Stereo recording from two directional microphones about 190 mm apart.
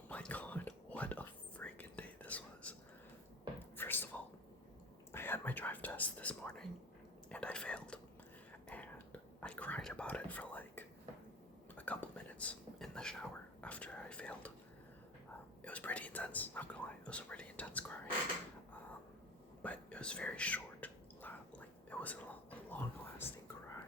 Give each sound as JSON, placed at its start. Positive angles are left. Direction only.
{"t": 0.1, "sound": "whispering", "side_deg": 5}
{"t": 3.8, "sound": "a sound", "side_deg": 10}
{"t": 5.1, "sound": "whispering", "side_deg": 10}
{"t": 15.6, "sound": "whispering", "side_deg": 5}
{"t": 19.6, "sound": "whispering", "side_deg": 5}